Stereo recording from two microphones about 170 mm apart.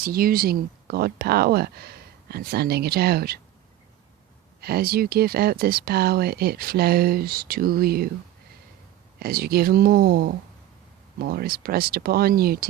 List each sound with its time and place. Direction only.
0.0 s speech: 60° right (ahead or behind)
4.6 s speech: 65° right (ahead or behind)
9.1 s speech: 65° right (ahead or behind)